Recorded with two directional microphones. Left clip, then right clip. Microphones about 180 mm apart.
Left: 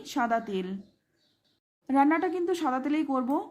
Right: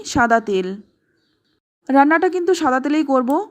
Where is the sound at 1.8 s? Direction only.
35° right (ahead or behind).